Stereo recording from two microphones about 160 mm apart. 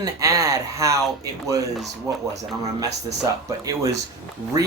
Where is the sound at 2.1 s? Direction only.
20° right (ahead or behind).